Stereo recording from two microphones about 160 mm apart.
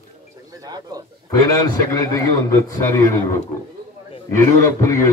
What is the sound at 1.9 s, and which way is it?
A man's voice, 20° left (ahead or behind).